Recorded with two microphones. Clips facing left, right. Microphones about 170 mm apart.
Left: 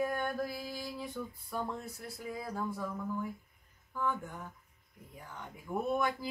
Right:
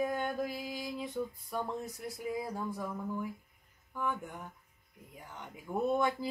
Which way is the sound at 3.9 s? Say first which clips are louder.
Left 1 dB; 15° right (ahead or behind).